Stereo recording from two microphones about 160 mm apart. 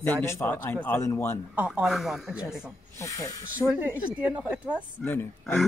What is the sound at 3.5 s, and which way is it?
Speech, 10° right (ahead or behind).